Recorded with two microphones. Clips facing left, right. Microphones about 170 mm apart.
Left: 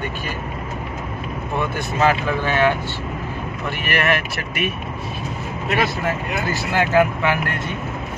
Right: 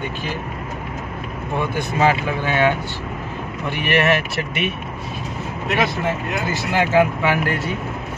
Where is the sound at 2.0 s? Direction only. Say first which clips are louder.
Even; 15° right (ahead or behind).